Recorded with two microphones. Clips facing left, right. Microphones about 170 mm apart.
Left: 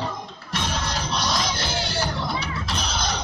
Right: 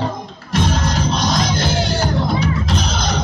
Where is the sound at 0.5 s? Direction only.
45° right (ahead or behind).